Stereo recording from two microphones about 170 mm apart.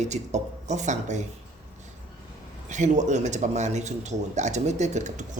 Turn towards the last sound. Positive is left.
turn(degrees=-45)  # may be behind; listen again after turning